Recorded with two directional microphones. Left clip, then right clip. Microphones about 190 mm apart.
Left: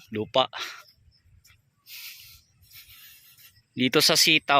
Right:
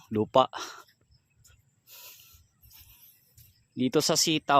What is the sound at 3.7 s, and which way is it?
Speech, 10° right (ahead or behind).